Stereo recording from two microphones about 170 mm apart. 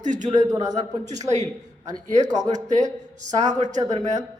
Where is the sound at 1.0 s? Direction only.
45° right (ahead or behind).